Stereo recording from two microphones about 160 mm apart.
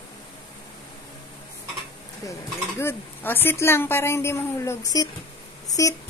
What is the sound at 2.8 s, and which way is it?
A woman's voice, 15° left (ahead or behind).